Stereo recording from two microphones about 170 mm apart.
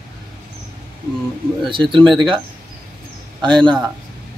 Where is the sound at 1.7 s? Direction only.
30° right (ahead or behind).